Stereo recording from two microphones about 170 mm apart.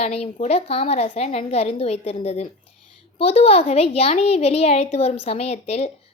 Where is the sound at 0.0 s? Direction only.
40° left (ahead or behind).